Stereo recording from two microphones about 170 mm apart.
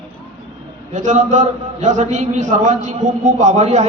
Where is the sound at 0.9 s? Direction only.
45° right (ahead or behind).